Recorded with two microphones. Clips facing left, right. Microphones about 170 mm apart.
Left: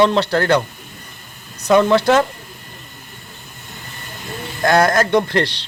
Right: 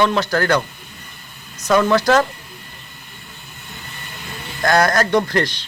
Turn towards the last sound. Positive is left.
turn(degrees=25)  # may be behind; listen again after turning